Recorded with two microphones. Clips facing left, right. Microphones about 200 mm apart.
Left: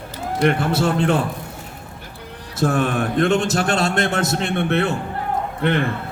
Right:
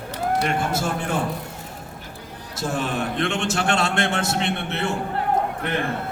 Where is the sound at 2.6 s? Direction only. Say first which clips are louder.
Left 6 dB; 55° left (ahead or behind).